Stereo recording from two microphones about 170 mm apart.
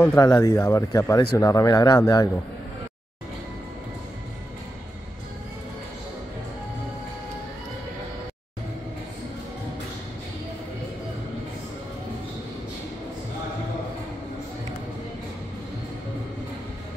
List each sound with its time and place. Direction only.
0.0 s speech: 15° left (ahead or behind)